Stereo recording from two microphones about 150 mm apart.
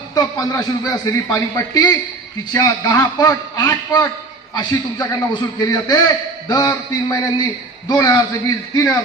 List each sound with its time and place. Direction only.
0.1 s a man's voice: 25° left (ahead or behind)